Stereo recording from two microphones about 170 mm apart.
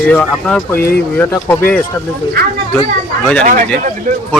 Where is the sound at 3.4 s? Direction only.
50° right (ahead or behind).